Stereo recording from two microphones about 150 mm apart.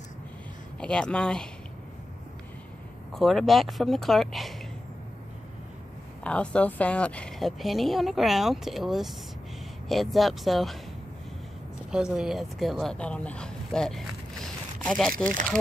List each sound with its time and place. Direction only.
0.7 s a woman's voice: 5° left (ahead or behind)
3.2 s a woman's voice: centre (ahead or behind)
6.2 s a woman's voice: 10° left (ahead or behind)
11.9 s a woman's voice: 5° right (ahead or behind)
15.2 s speech: 60° right (ahead or behind)